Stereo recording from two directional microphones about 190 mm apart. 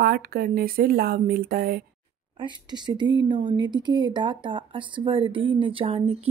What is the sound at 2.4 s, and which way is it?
Speech, 25° right (ahead or behind).